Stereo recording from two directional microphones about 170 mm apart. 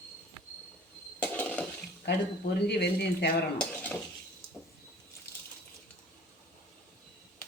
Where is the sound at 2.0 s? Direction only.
80° left.